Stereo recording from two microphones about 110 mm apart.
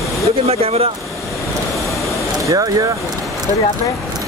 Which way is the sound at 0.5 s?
65° right (ahead or behind).